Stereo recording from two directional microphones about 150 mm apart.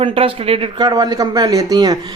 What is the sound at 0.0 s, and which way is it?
Speech, 40° right (ahead or behind).